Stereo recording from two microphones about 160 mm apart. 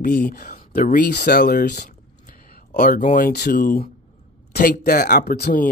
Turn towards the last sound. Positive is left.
turn(degrees=75)  # may be behind; listen again after turning